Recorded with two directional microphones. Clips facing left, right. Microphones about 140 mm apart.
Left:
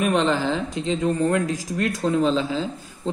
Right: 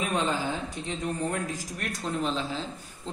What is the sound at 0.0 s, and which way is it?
A man's voice, 75° left (ahead or behind).